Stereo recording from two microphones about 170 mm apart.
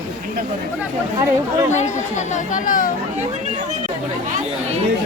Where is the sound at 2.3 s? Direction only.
50° left (ahead or behind).